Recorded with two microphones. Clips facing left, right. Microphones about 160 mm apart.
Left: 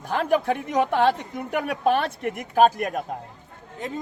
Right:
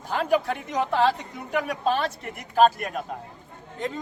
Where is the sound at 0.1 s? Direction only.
50° left (ahead or behind).